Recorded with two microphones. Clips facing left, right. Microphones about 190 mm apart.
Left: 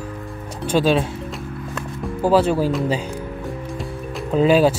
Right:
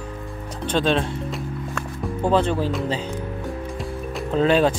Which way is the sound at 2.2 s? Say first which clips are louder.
Left 4 dB; 5° left (ahead or behind).